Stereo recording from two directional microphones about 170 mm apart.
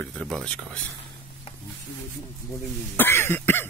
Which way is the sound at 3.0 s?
15° left (ahead or behind).